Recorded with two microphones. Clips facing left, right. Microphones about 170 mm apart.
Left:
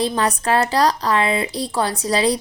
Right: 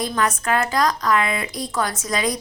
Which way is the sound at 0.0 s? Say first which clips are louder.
Left 3 dB; 30° left (ahead or behind).